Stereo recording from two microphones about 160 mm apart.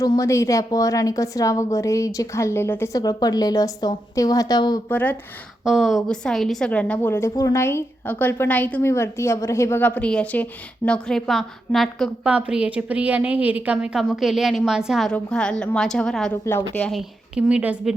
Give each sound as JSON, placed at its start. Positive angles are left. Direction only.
{"t": 0.0, "sound": "a woman's voice", "side_deg": 20}
{"t": 4.9, "sound": "a woman's voice", "side_deg": 10}
{"t": 5.6, "sound": "a woman's voice", "side_deg": 0}
{"t": 16.9, "sound": "a woman's voice", "side_deg": -5}